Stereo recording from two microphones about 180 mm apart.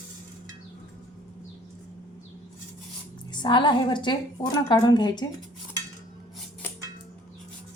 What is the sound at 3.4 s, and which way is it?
A woman's voice, 25° left (ahead or behind).